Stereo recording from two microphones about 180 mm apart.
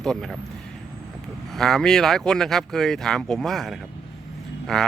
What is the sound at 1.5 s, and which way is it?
Speech, centre (ahead or behind).